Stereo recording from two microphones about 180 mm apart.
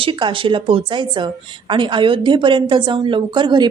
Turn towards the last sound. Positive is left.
turn(degrees=-25)  # may be behind; listen again after turning